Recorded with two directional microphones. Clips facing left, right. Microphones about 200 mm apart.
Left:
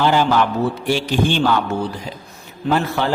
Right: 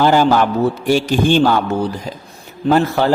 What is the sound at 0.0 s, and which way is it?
A man's voice, 45° right (ahead or behind).